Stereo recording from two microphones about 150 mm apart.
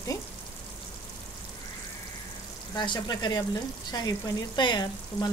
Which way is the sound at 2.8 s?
30° left (ahead or behind).